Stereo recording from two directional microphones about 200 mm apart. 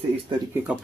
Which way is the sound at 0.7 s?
5° right (ahead or behind).